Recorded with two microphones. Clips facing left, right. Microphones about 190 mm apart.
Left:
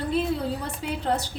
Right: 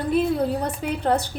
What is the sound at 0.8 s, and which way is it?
Speech, 55° right (ahead or behind).